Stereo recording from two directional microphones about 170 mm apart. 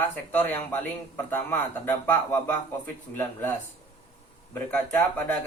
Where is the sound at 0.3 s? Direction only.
10° left (ahead or behind).